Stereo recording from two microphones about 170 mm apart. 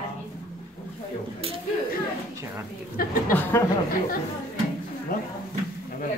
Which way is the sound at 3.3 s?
10° left (ahead or behind).